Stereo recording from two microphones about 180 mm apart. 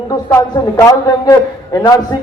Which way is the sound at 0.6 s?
25° left (ahead or behind).